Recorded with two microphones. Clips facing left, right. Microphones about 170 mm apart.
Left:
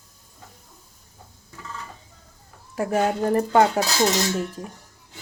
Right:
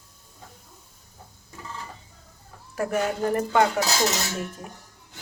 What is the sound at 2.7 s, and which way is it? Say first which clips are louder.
Speech: left 3 dB; 30° left (ahead or behind).